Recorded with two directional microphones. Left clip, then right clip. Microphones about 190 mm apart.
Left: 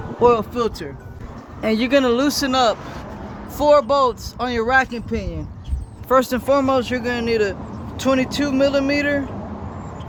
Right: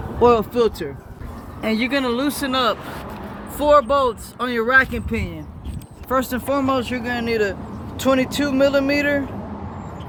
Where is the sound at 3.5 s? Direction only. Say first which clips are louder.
Left 1 dB; 25° left (ahead or behind).